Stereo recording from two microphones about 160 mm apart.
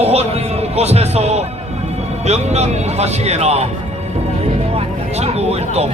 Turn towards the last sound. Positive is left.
turn(degrees=-40)  # may be behind; listen again after turning